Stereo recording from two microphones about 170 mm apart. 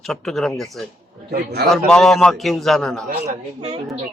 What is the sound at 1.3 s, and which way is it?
Speech, 70° right (ahead or behind).